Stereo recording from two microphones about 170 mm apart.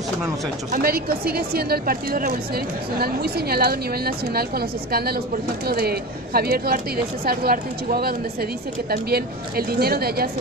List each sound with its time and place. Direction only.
0.7 s speech: 60° right (ahead or behind)